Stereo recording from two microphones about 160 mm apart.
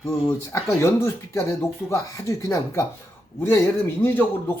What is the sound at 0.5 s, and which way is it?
Speech, 15° left (ahead or behind).